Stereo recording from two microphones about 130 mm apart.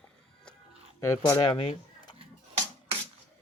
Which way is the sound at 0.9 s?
20° left (ahead or behind).